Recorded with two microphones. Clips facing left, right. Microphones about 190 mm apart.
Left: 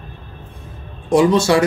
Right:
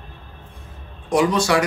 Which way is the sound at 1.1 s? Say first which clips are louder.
Left 5 dB; 25° left (ahead or behind).